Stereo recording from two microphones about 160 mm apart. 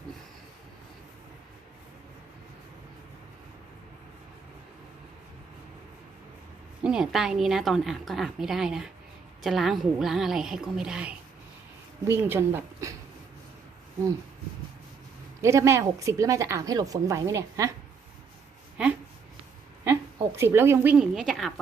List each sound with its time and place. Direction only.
6.8 s a woman's voice: 5° right (ahead or behind)
15.4 s a woman's voice: 20° right (ahead or behind)
19.8 s a woman's voice: 15° right (ahead or behind); by 21.5 s centre (ahead or behind)